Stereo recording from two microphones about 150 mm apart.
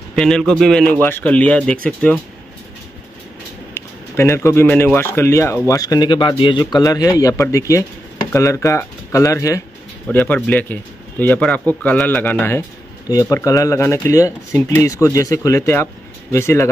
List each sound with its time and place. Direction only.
0.1 s a man's voice: 5° left (ahead or behind)
3.7 s speech: 15° left (ahead or behind)
10.0 s speech: 10° left (ahead or behind)